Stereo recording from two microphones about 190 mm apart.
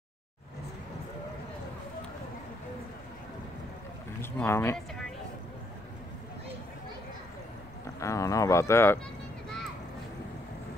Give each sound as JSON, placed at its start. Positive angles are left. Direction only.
{"t": 4.2, "sound": "speech", "side_deg": 10}
{"t": 8.0, "sound": "speech", "side_deg": 15}